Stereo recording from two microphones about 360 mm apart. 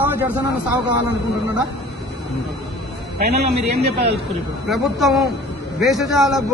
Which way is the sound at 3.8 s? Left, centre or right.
Right.